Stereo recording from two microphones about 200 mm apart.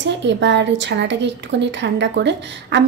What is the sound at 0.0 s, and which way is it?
Speech, 65° right (ahead or behind).